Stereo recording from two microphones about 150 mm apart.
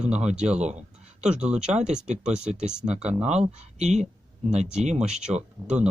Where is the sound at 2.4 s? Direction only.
50° right (ahead or behind).